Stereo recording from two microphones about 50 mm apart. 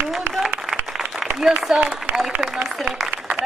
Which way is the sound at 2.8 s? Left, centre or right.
Centre.